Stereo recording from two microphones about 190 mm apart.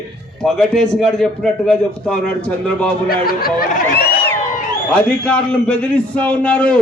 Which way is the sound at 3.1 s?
50° left (ahead or behind).